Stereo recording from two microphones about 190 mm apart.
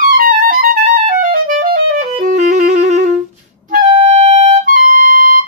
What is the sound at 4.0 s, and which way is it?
Music, 35° right (ahead or behind).